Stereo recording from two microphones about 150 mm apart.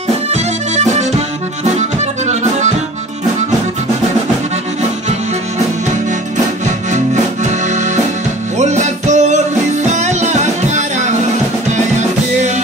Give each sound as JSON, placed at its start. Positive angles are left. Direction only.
{"t": 0.3, "sound": "music", "side_deg": -50}
{"t": 8.5, "sound": "music", "side_deg": -50}